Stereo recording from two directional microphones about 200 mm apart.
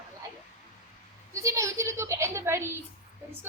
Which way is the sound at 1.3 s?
15° right (ahead or behind).